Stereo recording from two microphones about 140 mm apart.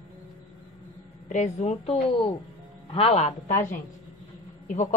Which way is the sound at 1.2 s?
60° left (ahead or behind).